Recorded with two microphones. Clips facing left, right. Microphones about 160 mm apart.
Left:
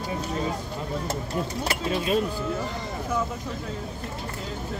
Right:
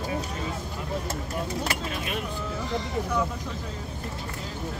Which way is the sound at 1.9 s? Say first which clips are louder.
Left 8 dB; 30° left (ahead or behind).